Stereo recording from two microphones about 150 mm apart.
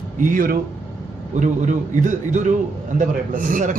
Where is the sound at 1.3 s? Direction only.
55° right (ahead or behind).